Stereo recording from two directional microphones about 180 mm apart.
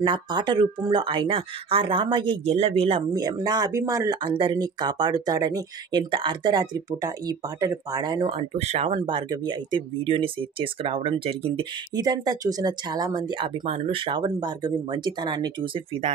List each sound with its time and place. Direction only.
0.0 s speech: 25° right (ahead or behind)
3.2 s speech: 20° right (ahead or behind); by 8.9 s 35° right (ahead or behind)
8.9 s speech: 25° right (ahead or behind)